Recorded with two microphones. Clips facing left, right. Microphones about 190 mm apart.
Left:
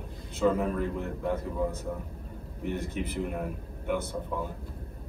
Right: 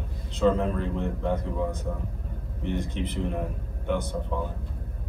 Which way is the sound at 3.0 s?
10° left (ahead or behind).